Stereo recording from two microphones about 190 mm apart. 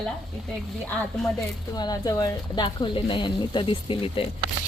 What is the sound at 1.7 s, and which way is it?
Speech, 20° left (ahead or behind).